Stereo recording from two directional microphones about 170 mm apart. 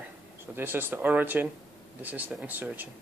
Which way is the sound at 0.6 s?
10° right (ahead or behind).